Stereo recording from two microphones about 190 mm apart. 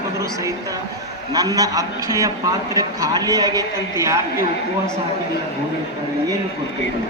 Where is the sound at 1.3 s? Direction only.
20° right (ahead or behind).